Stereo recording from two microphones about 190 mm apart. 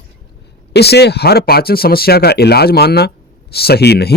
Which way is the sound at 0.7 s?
60° left (ahead or behind).